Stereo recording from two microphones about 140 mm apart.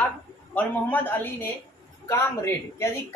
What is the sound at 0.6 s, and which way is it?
Speech, 10° left (ahead or behind).